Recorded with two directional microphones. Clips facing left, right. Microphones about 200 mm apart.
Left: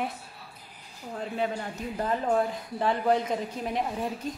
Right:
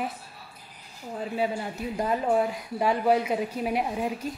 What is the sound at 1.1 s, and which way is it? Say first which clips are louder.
Speech: right 2 dB; 5° right (ahead or behind).